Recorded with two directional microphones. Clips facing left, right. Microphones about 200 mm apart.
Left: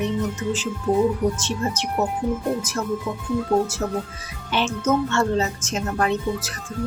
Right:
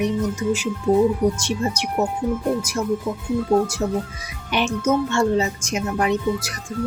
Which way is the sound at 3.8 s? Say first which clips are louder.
Right 3 dB; 20° right (ahead or behind).